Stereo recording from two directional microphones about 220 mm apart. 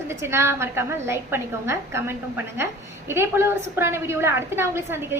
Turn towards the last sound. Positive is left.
turn(degrees=-10)  # may be behind; listen again after turning